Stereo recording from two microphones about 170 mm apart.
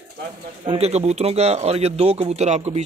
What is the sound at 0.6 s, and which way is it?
Speech, 35° right (ahead or behind).